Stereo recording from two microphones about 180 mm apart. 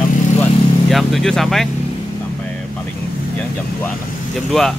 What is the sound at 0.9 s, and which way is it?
Speech, centre (ahead or behind).